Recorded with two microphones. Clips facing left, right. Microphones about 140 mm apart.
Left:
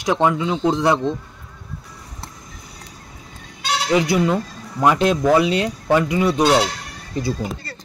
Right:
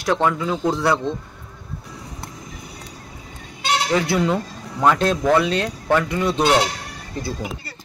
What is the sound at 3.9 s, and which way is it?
Speech, 15° left (ahead or behind).